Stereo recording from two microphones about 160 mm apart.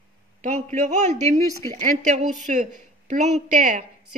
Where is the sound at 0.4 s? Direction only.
50° right (ahead or behind).